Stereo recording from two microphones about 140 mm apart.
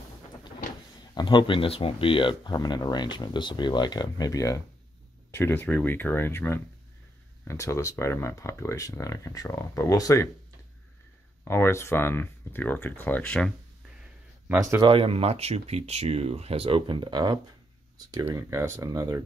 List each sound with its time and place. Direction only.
1.1 s speech: 35° left (ahead or behind)
11.4 s speech: 15° left (ahead or behind)
14.8 s speech: 40° right (ahead or behind); by 19.2 s 25° right (ahead or behind)